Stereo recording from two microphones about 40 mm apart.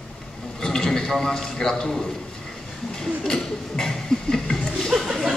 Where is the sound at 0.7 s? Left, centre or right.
Centre.